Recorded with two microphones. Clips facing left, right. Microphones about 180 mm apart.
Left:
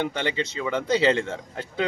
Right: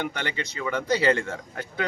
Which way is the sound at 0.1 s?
25° left (ahead or behind).